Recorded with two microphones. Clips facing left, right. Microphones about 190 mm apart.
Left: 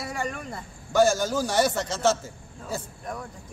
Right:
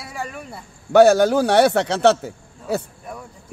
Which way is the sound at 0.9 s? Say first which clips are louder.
Right 9 dB; 65° right (ahead or behind).